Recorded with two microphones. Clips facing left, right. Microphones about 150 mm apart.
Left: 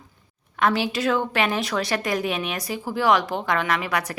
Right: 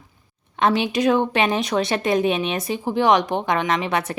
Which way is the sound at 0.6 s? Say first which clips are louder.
Right 3 dB; 20° right (ahead or behind).